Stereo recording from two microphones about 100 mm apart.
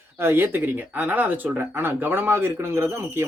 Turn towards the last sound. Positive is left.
turn(degrees=-25)  # may be behind; listen again after turning